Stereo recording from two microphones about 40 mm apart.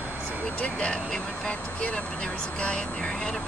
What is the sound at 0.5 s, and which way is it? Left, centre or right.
Speech, left.